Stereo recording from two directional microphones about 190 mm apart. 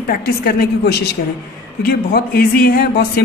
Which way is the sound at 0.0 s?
50° left (ahead or behind).